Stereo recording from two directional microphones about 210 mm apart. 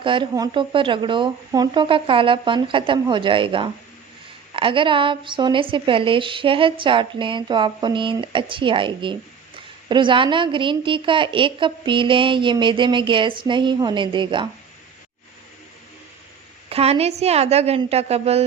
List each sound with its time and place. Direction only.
0.0 s a woman's voice: 25° right (ahead or behind)
16.6 s a woman's voice: 30° right (ahead or behind)